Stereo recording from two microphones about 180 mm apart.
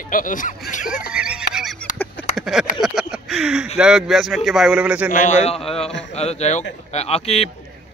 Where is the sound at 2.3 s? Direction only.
5° right (ahead or behind).